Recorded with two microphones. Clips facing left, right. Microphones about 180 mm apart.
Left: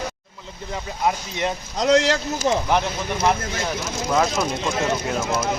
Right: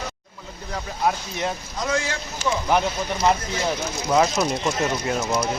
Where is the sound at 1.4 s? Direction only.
75° left (ahead or behind).